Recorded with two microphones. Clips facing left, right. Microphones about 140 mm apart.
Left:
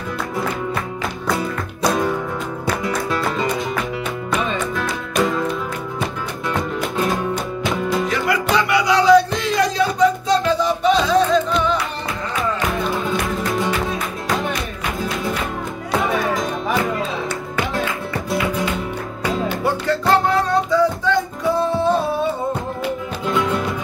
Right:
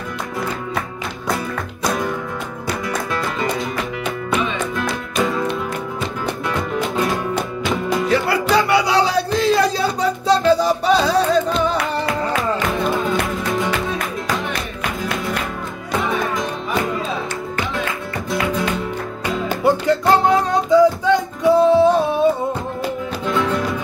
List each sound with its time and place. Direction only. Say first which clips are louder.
8.1 s music: right 2 dB; 30° right (ahead or behind)
19.6 s music: right 7 dB; 15° right (ahead or behind)